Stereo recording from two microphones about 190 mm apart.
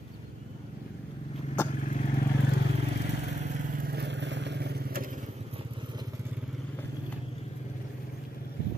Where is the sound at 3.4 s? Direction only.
50° right (ahead or behind).